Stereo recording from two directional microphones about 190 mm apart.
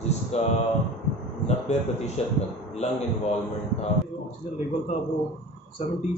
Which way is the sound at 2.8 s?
35° left (ahead or behind).